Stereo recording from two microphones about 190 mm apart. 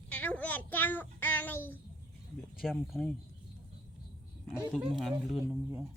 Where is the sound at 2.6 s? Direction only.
Centre (ahead or behind).